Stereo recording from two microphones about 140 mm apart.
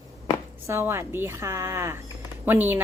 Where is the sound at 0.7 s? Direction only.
15° right (ahead or behind).